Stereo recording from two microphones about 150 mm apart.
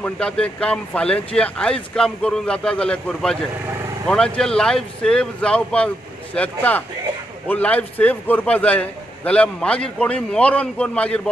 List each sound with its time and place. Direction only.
0.0 s a man's voice: 5° left (ahead or behind)